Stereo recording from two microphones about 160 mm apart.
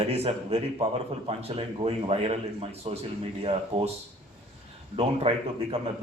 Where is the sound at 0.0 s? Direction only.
40° right (ahead or behind).